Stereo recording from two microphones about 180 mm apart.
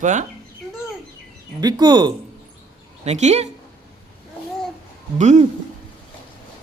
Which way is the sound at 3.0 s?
40° right (ahead or behind).